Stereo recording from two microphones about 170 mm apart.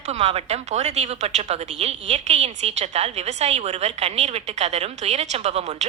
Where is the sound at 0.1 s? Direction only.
40° right (ahead or behind).